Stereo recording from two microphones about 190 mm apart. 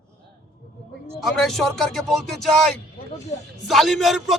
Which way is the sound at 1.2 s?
Centre (ahead or behind).